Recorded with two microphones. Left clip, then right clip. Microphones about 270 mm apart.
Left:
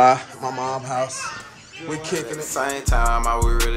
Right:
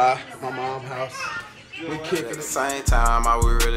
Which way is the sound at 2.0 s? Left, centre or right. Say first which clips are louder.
Even; centre.